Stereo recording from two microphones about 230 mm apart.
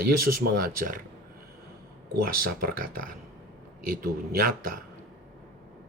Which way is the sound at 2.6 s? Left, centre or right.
Right.